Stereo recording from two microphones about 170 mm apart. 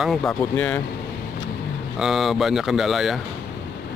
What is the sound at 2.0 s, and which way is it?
Speech, centre (ahead or behind).